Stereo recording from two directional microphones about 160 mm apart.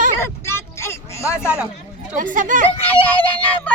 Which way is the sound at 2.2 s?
55° right (ahead or behind).